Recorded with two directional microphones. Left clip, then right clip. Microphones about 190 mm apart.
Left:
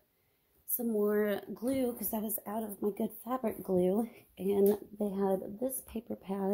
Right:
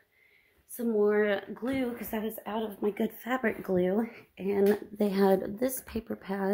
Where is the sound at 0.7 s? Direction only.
75° left (ahead or behind).